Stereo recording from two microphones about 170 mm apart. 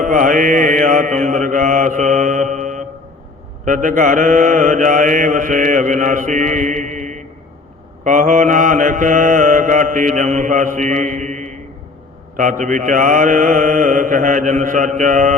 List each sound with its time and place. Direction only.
0.0 s mantra: 50° right (ahead or behind)